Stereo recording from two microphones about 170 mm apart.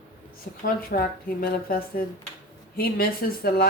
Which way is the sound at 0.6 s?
60° left (ahead or behind).